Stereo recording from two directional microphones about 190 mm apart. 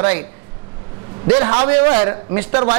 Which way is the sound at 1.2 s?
20° right (ahead or behind).